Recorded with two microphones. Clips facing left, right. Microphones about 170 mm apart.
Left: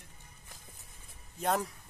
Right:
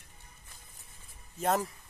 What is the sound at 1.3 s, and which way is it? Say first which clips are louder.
Speech: right 2 dB; centre (ahead or behind).